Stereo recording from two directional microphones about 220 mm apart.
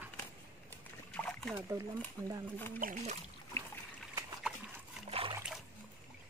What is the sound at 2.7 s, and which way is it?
Speech, 35° right (ahead or behind).